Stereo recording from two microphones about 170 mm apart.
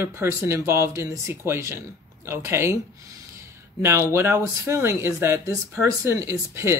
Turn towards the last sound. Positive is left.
turn(degrees=-15)  # may be behind; listen again after turning